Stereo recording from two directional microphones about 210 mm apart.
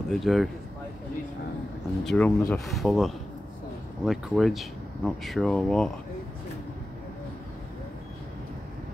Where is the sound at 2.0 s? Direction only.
10° left (ahead or behind).